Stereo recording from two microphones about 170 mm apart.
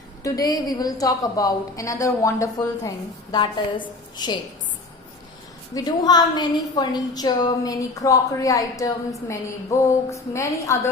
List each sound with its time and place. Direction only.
0.2 s a woman's voice: 20° left (ahead or behind)
5.7 s a woman's voice: 25° left (ahead or behind)